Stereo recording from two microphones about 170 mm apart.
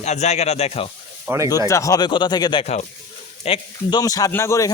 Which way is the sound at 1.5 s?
20° left (ahead or behind).